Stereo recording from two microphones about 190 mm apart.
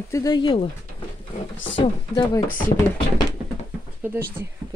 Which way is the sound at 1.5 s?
80° left.